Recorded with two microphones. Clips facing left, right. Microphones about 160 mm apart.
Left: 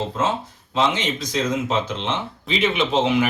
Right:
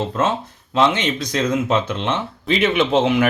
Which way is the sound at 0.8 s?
60° right (ahead or behind).